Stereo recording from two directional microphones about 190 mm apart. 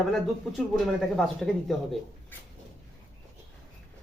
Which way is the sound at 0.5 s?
Centre (ahead or behind).